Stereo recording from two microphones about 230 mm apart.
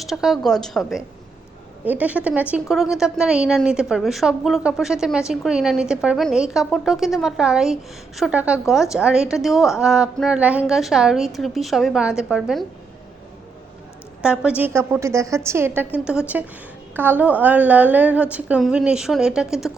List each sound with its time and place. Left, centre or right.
0.0 s a woman's voice: centre
14.2 s a woman's voice: centre